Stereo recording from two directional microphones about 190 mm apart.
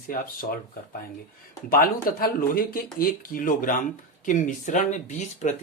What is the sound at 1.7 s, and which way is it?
Speech, 50° left (ahead or behind).